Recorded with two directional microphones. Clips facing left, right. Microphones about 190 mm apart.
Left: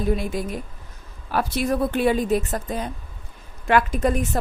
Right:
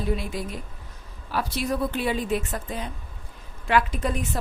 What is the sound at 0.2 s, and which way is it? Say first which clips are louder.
A woman's voice: left 5 dB; 50° left (ahead or behind).